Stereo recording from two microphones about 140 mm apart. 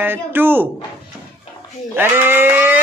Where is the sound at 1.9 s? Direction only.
15° right (ahead or behind).